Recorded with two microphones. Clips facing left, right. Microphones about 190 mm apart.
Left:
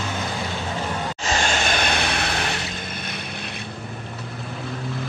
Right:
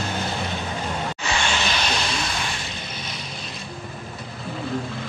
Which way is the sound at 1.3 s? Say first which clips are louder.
Left 3 dB; 45° left (ahead or behind).